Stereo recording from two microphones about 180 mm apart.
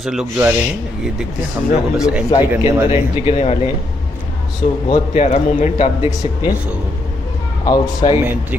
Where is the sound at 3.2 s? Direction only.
35° left (ahead or behind).